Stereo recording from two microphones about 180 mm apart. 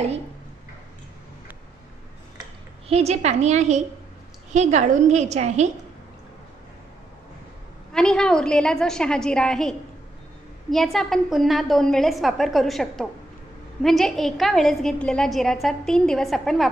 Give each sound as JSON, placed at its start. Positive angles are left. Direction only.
{"t": 2.9, "sound": "a woman's voice", "side_deg": -35}
{"t": 7.9, "sound": "a woman's voice", "side_deg": 5}